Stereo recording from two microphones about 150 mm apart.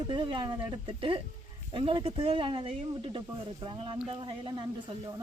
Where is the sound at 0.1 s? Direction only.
30° right (ahead or behind).